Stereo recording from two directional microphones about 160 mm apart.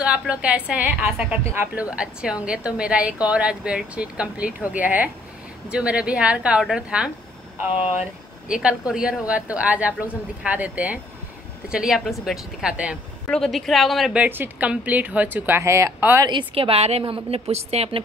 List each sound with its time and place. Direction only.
0.0 s speech: 10° right (ahead or behind)
8.5 s speech: 5° right (ahead or behind)
16.3 s a woman's voice: 35° right (ahead or behind)